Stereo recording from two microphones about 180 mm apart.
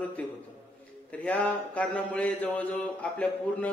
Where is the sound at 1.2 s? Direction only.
10° left (ahead or behind).